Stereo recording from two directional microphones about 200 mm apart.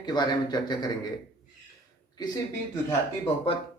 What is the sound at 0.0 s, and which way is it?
Speech, 20° left (ahead or behind).